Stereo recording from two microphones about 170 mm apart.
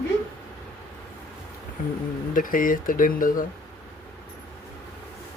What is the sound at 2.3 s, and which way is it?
Speech, 55° left (ahead or behind).